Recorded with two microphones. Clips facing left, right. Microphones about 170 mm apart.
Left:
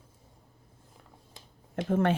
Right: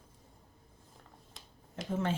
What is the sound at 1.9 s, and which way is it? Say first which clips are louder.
Speech: left 7 dB; 65° left (ahead or behind).